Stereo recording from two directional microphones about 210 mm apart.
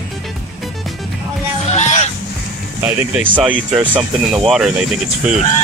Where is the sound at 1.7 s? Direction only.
35° left (ahead or behind).